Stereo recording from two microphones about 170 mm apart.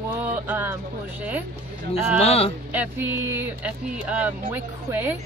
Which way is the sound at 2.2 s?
35° left (ahead or behind).